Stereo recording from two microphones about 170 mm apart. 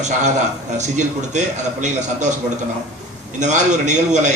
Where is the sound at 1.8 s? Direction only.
45° right (ahead or behind).